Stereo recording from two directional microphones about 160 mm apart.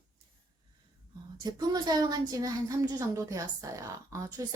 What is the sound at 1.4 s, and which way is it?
A woman's voice, 25° right (ahead or behind).